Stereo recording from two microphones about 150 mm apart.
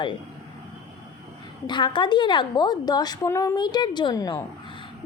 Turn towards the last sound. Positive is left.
turn(degrees=25)  # may be behind; listen again after turning